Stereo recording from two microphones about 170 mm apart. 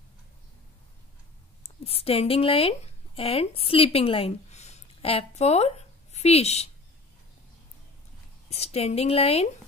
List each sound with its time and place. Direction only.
1.6 s speech: 35° left (ahead or behind)
8.5 s a woman's voice: 40° left (ahead or behind)